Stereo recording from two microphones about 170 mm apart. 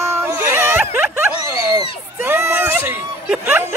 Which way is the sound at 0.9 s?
15° right (ahead or behind).